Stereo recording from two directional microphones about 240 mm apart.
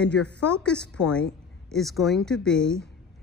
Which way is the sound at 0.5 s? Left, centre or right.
Centre.